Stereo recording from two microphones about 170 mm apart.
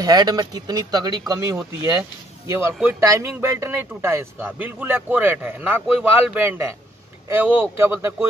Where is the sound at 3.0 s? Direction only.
15° right (ahead or behind).